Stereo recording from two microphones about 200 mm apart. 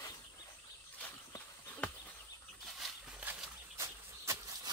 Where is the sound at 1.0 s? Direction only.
10° left (ahead or behind).